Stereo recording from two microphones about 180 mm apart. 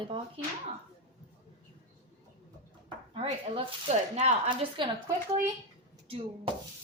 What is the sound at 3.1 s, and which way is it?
A woman's voice, 30° right (ahead or behind).